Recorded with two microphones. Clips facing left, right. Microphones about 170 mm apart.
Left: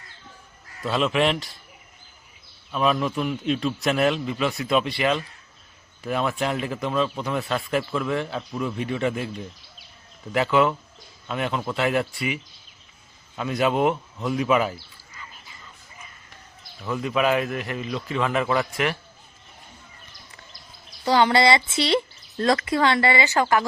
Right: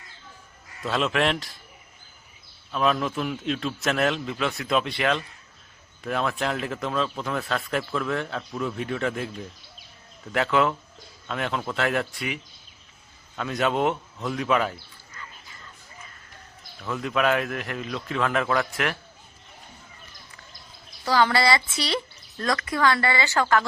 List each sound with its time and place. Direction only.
0.8 s speech: centre (ahead or behind)
2.7 s speech: centre (ahead or behind)
10.3 s speech: centre (ahead or behind)
16.8 s speech: centre (ahead or behind)
21.0 s speech: 25° left (ahead or behind)